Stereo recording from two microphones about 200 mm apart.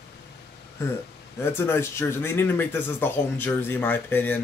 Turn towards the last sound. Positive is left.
turn(degrees=10)  # may be behind; listen again after turning